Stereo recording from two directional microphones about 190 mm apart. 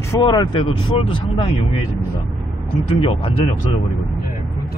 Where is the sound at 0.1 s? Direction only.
20° left (ahead or behind).